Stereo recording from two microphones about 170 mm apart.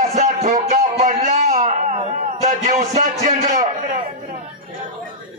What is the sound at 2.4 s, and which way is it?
A man's voice, 45° right (ahead or behind).